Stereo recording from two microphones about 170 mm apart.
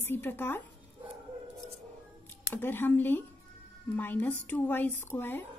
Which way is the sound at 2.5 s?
10° left (ahead or behind).